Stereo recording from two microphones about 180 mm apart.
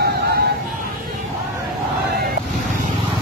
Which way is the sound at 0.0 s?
60° right (ahead or behind).